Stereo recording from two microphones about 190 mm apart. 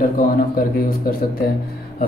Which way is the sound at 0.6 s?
50° left (ahead or behind).